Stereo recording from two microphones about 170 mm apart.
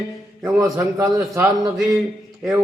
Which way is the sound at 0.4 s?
20° right (ahead or behind).